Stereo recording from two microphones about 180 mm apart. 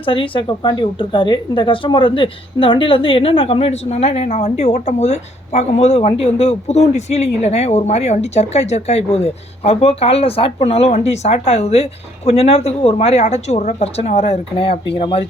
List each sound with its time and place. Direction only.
0.0 s speech: 30° left (ahead or behind)